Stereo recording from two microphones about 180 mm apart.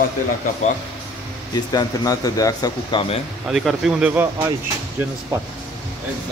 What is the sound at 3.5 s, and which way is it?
Speech, centre (ahead or behind).